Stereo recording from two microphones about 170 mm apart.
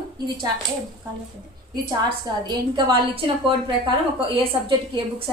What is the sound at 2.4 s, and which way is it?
A woman's voice, 25° right (ahead or behind).